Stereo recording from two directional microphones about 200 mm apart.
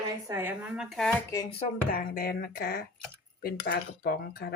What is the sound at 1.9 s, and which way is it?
Speech, 45° left (ahead or behind).